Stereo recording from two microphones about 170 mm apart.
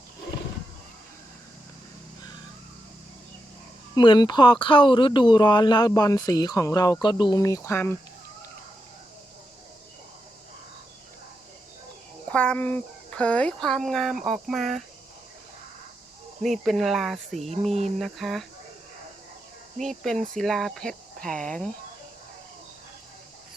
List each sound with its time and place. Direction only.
3.9 s speech: 25° left (ahead or behind)
12.3 s speech: 10° left (ahead or behind)
16.4 s speech: centre (ahead or behind)
17.7 s a sound: 40° right (ahead or behind)
17.9 s speech: centre (ahead or behind)
19.8 s speech: centre (ahead or behind)